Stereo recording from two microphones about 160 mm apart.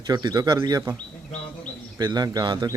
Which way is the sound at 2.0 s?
25° right (ahead or behind).